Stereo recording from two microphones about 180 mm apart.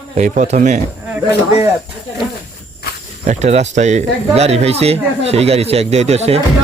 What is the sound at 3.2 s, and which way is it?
Speech, 40° right (ahead or behind).